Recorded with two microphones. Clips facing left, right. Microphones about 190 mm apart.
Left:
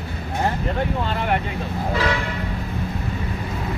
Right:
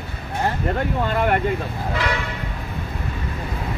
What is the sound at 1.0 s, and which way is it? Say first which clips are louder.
Speech: right 3 dB; 50° right (ahead or behind).